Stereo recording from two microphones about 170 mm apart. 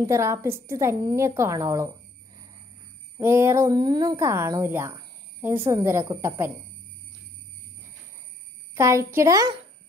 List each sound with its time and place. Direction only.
0.0 s a woman's voice: 15° right (ahead or behind)
3.2 s a woman's voice: 15° right (ahead or behind)
8.7 s a woman's voice: 15° right (ahead or behind)